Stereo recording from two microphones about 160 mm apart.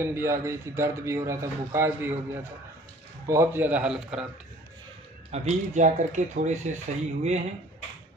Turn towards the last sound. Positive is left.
turn(degrees=-45)  # may be behind; listen again after turning